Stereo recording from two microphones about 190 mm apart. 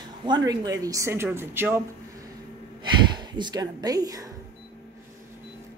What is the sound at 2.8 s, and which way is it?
Speech, 25° right (ahead or behind).